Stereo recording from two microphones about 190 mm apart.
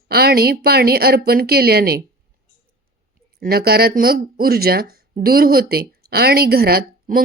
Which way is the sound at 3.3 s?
55° right (ahead or behind).